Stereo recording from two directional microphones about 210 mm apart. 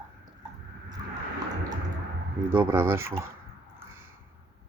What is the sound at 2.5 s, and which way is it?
Speech, 10° right (ahead or behind).